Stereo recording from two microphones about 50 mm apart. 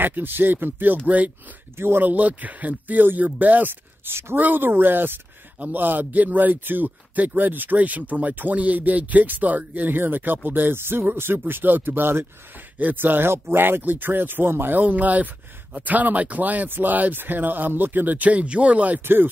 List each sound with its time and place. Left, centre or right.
0.0 s speech: right
1.8 s speech: right
4.4 s speech: right
14.8 s speech: right
18.9 s speech: right